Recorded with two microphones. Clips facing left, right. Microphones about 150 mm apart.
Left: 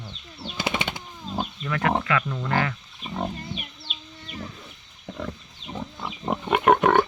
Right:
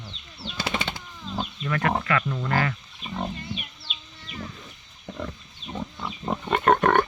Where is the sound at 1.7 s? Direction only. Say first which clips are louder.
Left 1 dB; 10° left (ahead or behind).